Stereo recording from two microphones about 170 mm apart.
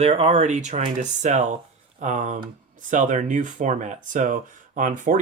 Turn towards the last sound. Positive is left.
turn(degrees=-50)  # may be behind; listen again after turning